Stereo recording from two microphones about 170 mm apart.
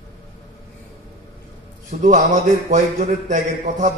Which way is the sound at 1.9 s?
50° right (ahead or behind).